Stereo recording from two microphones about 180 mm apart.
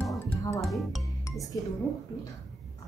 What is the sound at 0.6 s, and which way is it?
Speech, centre (ahead or behind).